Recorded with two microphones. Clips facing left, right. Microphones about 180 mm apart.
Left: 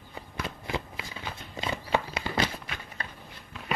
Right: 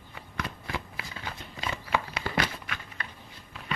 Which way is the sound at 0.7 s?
20° left (ahead or behind).